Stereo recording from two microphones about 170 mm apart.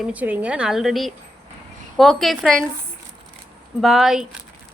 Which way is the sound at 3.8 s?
Centre (ahead or behind).